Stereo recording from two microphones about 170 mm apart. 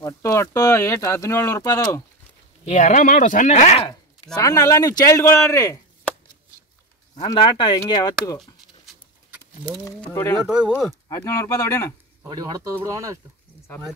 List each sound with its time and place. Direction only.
0.0 s speech: 15° left (ahead or behind)
2.6 s speech: 45° left (ahead or behind)
4.4 s speech: 20° left (ahead or behind)
7.2 s speech: 30° left (ahead or behind)
10.0 s speech: 15° left (ahead or behind)
10.3 s speech: 5° right (ahead or behind)
11.1 s speech: 20° left (ahead or behind)
12.2 s speech: 25° right (ahead or behind)